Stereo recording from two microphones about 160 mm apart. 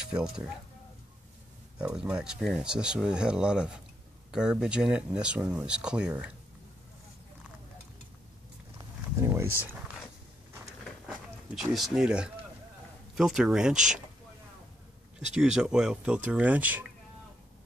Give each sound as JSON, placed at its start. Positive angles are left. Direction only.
{"t": 0.0, "sound": "speech", "side_deg": -5}
{"t": 1.8, "sound": "speech", "side_deg": -5}
{"t": 9.1, "sound": "speech", "side_deg": -15}
{"t": 11.5, "sound": "speech", "side_deg": 0}
{"t": 15.3, "sound": "speech", "side_deg": -5}